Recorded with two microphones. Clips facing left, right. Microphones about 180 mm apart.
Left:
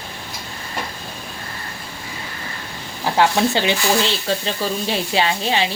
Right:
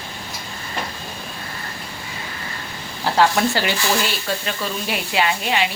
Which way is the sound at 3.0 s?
15° left (ahead or behind).